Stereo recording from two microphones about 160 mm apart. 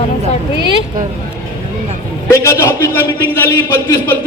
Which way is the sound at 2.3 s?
20° left (ahead or behind).